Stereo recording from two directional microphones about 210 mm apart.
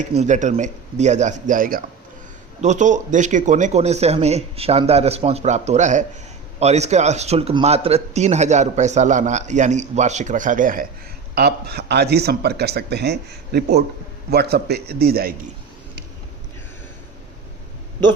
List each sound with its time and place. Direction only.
0.0 s speech: 35° right (ahead or behind)